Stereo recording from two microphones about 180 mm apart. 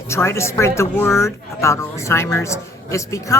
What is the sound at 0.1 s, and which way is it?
A man's voice, 15° left (ahead or behind).